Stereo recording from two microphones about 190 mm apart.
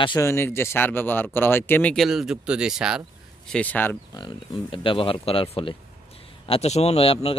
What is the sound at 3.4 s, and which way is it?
Speech, 5° left (ahead or behind).